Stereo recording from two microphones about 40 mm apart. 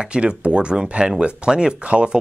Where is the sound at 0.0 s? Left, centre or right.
Right.